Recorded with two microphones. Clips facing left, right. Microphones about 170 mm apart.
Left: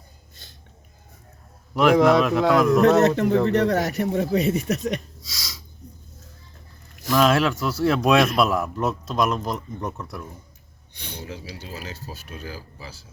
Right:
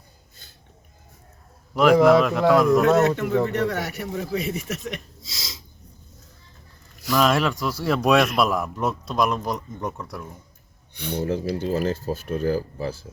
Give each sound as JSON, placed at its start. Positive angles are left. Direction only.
{"t": 1.7, "sound": "speech", "side_deg": 0}
{"t": 3.0, "sound": "speech", "side_deg": 40}
{"t": 5.2, "sound": "snort", "side_deg": -25}
{"t": 7.1, "sound": "speech", "side_deg": 0}
{"t": 11.0, "sound": "speech", "side_deg": -50}